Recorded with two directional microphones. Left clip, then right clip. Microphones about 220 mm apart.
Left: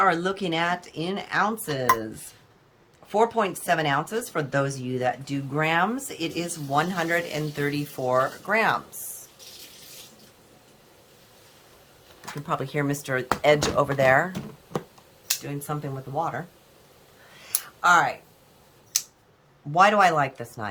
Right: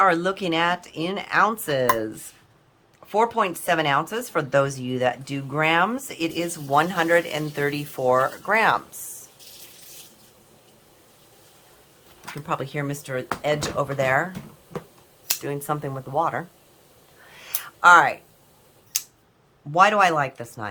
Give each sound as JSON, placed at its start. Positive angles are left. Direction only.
{"t": 0.0, "sound": "speech", "side_deg": -10}
{"t": 3.1, "sound": "speech", "side_deg": -10}
{"t": 12.2, "sound": "speech", "side_deg": -5}
{"t": 14.7, "sound": "finger snapping", "side_deg": 30}
{"t": 15.4, "sound": "speech", "side_deg": -20}
{"t": 17.7, "sound": "speech", "side_deg": -15}
{"t": 19.7, "sound": "speech", "side_deg": -5}